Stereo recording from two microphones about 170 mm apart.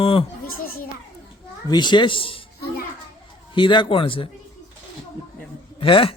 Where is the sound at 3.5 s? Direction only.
30° left (ahead or behind).